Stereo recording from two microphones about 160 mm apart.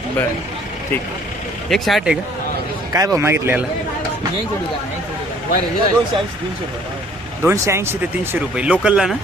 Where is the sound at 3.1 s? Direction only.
15° right (ahead or behind).